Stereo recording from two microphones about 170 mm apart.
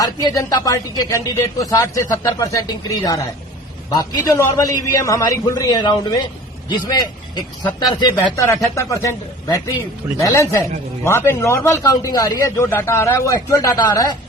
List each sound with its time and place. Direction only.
0.0 s a man's voice: 20° left (ahead or behind)